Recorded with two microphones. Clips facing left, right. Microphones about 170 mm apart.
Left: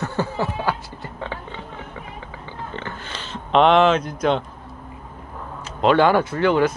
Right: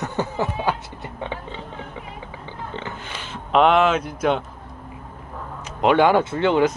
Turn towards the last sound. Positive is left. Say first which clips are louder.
# even
turn(degrees=-20)  # may be behind; listen again after turning